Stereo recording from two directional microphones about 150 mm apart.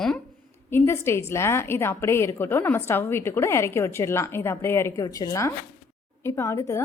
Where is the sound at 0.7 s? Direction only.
15° left (ahead or behind).